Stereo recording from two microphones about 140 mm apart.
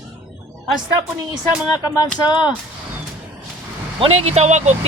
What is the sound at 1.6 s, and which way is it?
Speech, 30° left (ahead or behind).